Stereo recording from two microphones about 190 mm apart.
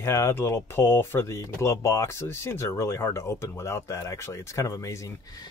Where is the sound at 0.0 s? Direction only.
15° left (ahead or behind).